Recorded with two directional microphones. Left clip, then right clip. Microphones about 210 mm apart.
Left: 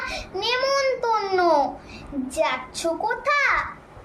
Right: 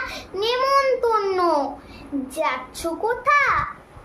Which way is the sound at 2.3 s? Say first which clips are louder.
Left 1 dB; 15° right (ahead or behind).